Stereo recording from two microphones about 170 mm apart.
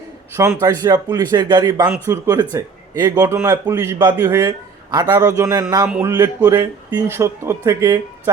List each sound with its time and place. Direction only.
0.3 s speech: 15° right (ahead or behind)